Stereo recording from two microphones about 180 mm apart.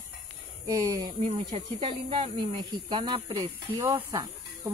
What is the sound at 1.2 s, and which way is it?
Speech, 40° right (ahead or behind).